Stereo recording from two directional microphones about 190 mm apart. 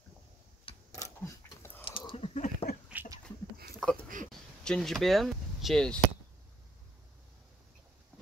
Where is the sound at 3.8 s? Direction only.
Centre (ahead or behind).